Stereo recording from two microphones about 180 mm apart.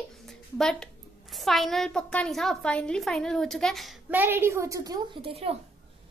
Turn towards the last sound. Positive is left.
turn(degrees=-20)  # may be behind; listen again after turning